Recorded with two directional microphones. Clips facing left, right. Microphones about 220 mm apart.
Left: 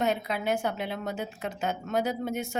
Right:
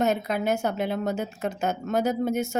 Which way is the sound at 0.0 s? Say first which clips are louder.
Right 4 dB; 45° right (ahead or behind).